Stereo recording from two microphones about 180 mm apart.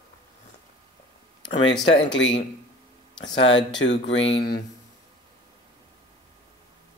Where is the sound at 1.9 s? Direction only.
85° left.